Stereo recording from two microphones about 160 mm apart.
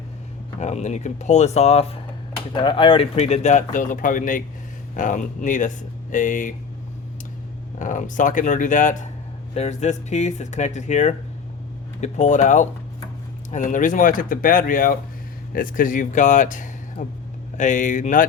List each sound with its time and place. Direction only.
0.6 s speech: 45° left (ahead or behind)
7.8 s speech: 55° left (ahead or behind)